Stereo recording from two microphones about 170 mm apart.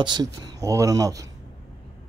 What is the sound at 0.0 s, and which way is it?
Speech, 25° right (ahead or behind).